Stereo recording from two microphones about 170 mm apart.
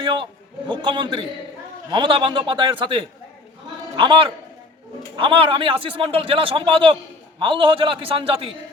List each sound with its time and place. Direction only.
0.0 s a man's voice: 30° right (ahead or behind)